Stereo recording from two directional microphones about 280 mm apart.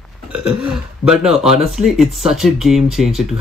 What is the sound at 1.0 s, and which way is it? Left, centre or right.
Speech, centre.